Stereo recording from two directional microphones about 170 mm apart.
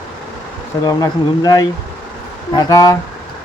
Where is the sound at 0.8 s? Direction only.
20° left (ahead or behind).